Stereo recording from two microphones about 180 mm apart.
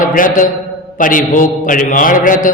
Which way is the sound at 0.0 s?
50° left (ahead or behind).